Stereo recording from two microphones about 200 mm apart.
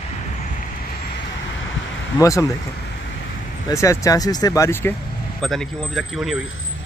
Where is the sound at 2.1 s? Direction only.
15° left (ahead or behind).